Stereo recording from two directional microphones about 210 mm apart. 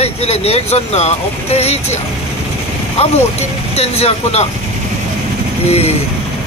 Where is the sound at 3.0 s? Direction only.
30° left (ahead or behind).